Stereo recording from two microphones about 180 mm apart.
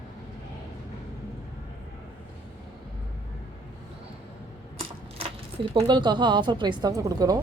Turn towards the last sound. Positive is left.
turn(degrees=-20)  # may be behind; listen again after turning